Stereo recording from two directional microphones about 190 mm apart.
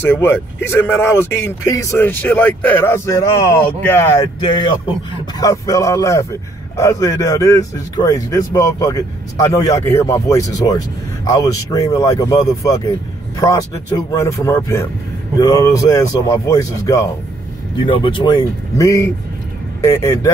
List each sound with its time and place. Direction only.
0.0 s speech: 10° left (ahead or behind)
5.4 s speech: 20° left (ahead or behind)